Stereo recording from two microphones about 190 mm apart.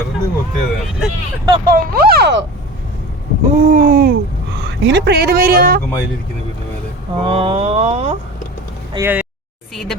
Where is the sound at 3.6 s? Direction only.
45° right (ahead or behind).